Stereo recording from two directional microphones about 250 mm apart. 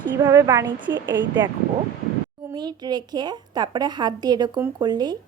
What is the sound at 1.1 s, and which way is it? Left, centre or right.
Speech, right.